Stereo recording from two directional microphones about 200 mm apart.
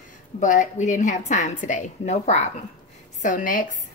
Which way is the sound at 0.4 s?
35° left (ahead or behind).